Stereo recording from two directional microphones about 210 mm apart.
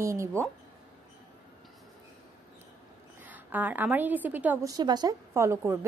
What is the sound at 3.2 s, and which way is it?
A woman's voice, 10° right (ahead or behind).